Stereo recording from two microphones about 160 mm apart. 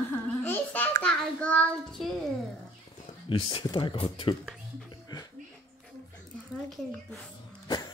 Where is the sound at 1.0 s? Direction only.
10° left (ahead or behind).